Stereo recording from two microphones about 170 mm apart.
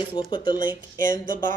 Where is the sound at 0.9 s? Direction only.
50° right (ahead or behind).